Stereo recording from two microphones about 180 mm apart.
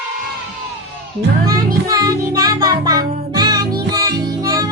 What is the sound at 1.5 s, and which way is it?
Music, 20° right (ahead or behind).